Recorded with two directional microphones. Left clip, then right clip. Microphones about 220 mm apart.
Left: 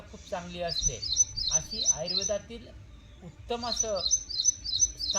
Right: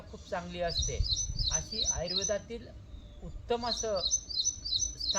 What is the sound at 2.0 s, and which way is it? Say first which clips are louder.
Speech: left 3 dB; 20° right (ahead or behind).